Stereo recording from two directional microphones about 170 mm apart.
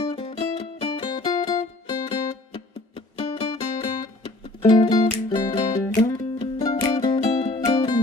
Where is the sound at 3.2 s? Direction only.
30° left (ahead or behind).